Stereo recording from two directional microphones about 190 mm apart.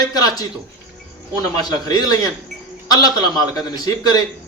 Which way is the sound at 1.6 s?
20° left (ahead or behind).